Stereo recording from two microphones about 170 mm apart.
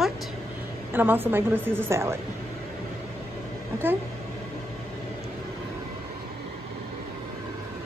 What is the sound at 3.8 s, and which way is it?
Speech, 10° right (ahead or behind).